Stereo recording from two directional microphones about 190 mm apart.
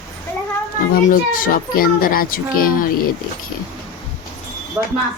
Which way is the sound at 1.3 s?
50° left (ahead or behind).